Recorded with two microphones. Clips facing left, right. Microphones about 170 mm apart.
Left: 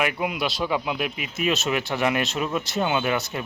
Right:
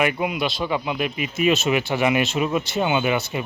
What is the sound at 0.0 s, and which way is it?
Speech, centre (ahead or behind).